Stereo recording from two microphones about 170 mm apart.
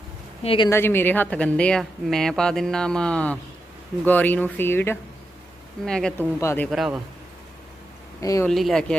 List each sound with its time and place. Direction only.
0.4 s speech: 30° left (ahead or behind)
0.7 s speech: 15° left (ahead or behind)
6.4 s speech: 15° left (ahead or behind)
6.7 s speech: centre (ahead or behind)
8.2 s speech: 20° left (ahead or behind)
8.4 s speech: centre (ahead or behind)